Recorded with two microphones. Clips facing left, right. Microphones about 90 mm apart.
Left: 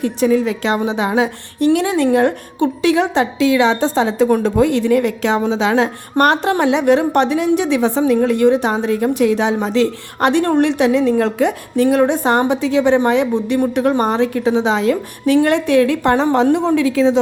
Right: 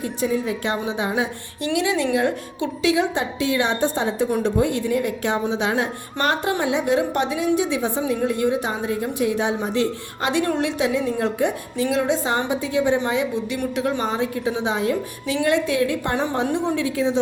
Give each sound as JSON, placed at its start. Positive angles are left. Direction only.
{"t": 0.0, "sound": "a woman's voice", "side_deg": 80}
{"t": 1.5, "sound": "a woman's voice", "side_deg": 50}
{"t": 10.4, "sound": "a woman's voice", "side_deg": 50}
{"t": 10.7, "sound": "a woman's voice", "side_deg": 65}
{"t": 11.9, "sound": "a woman's voice", "side_deg": 55}
{"t": 13.0, "sound": "a woman's voice", "side_deg": 60}
{"t": 15.4, "sound": "a woman's voice", "side_deg": 60}